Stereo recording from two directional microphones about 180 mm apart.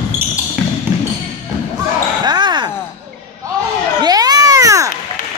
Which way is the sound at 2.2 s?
25° right (ahead or behind).